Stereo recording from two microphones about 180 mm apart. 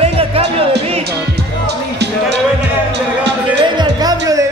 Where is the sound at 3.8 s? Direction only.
20° right (ahead or behind).